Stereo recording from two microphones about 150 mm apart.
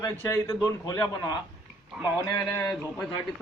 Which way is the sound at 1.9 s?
10° right (ahead or behind).